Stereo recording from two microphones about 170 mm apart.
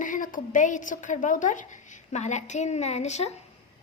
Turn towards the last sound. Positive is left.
turn(degrees=40)  # may be behind; listen again after turning